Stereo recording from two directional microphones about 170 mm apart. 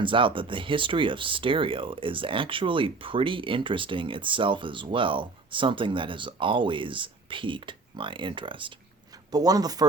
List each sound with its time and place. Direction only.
0.0 s speech: 30° right (ahead or behind)